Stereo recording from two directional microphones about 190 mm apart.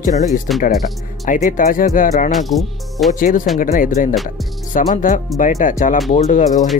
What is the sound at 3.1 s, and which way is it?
Speech, 45° left (ahead or behind).